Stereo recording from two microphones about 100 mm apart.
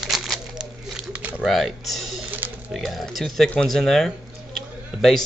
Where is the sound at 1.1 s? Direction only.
15° right (ahead or behind).